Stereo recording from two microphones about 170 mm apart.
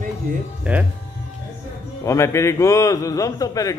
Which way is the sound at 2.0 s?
15° left (ahead or behind).